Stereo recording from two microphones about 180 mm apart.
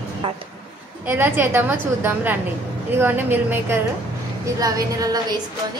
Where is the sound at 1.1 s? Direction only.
10° right (ahead or behind).